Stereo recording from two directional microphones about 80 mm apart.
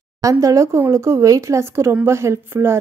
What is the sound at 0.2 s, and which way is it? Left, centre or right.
A woman's voice, right.